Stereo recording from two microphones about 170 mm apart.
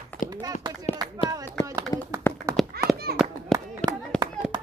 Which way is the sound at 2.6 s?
Centre (ahead or behind).